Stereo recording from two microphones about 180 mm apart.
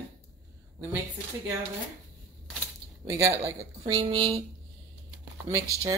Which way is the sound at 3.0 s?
15° right (ahead or behind).